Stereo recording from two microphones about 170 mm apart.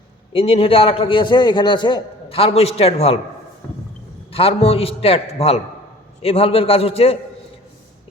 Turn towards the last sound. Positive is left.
turn(degrees=35)  # may be behind; listen again after turning